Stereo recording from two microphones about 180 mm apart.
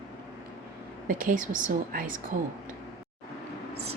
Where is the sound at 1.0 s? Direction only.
50° right (ahead or behind).